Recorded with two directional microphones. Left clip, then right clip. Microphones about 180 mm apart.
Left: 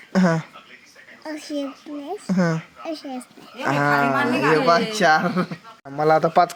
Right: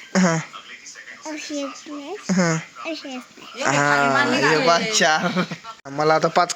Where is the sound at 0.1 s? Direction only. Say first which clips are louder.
Right 1 dB; 10° left (ahead or behind).